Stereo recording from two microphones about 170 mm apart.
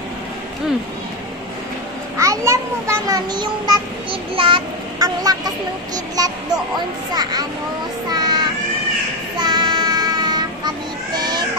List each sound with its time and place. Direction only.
2.1 s a child's voice: 20° right (ahead or behind)
4.1 s a child's voice: 30° right (ahead or behind)
8.1 s child singing: 25° right (ahead or behind)
9.4 s child singing: 25° right (ahead or behind)